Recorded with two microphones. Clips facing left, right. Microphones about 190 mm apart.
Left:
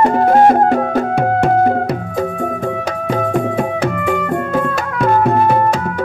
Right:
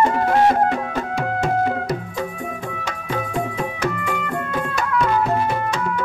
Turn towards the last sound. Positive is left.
turn(degrees=55)  # may be behind; listen again after turning